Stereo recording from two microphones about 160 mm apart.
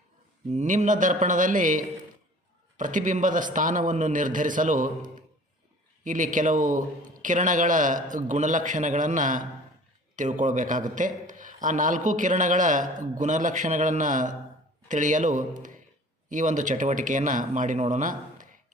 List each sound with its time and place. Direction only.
0.5 s a man's voice: 45° right (ahead or behind)